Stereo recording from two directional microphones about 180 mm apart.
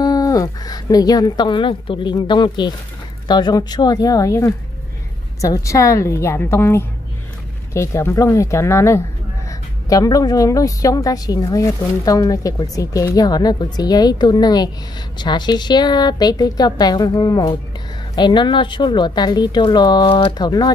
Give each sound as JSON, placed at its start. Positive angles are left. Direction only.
{"t": 0.0, "sound": "a woman's voice", "side_deg": 20}